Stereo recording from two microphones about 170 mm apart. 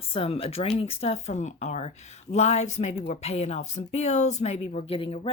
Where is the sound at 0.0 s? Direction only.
35° left (ahead or behind).